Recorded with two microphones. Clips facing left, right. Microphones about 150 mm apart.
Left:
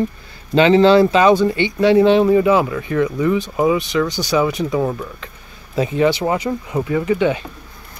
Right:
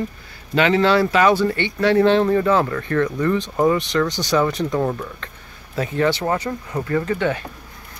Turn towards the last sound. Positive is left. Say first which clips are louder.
# left 4 dB
turn(degrees=15)  # may be behind; listen again after turning